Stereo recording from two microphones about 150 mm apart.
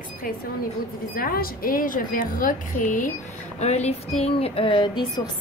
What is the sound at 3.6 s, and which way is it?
Speech, 45° left (ahead or behind).